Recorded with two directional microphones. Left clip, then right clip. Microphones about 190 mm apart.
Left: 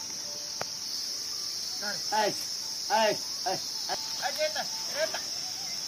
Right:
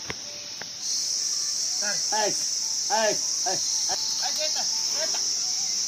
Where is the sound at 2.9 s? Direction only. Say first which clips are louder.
Right 1 dB; centre (ahead or behind).